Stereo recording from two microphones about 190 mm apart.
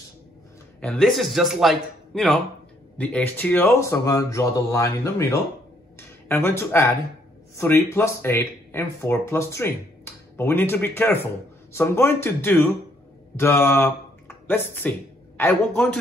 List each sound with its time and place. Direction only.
0.7 s a man's voice: 5° left (ahead or behind)